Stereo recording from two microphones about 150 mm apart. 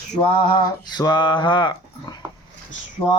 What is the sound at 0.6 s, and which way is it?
Speech, 25° left (ahead or behind).